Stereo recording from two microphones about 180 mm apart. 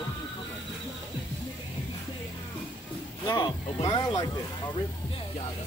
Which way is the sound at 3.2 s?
25° left (ahead or behind).